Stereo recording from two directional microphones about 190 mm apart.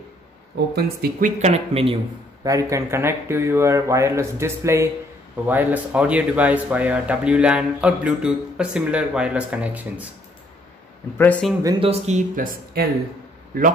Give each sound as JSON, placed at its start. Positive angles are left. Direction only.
{"t": 0.7, "sound": "speech", "side_deg": -55}
{"t": 1.4, "sound": "speech", "side_deg": -35}
{"t": 2.4, "sound": "speech", "side_deg": -15}
{"t": 11.1, "sound": "speech", "side_deg": 10}
{"t": 11.6, "sound": "speech", "side_deg": -30}